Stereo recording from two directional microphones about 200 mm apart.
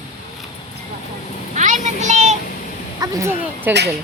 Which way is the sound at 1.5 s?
35° right (ahead or behind).